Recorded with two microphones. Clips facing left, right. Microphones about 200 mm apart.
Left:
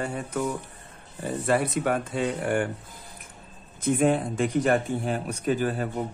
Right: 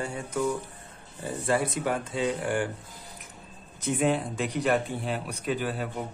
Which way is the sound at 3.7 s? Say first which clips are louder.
Left 4 dB; 55° left (ahead or behind).